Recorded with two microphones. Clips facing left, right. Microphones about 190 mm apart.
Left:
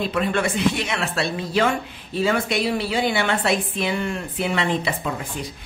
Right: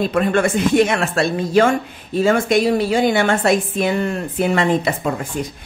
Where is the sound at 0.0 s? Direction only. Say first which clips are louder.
Right 6 dB; 50° right (ahead or behind).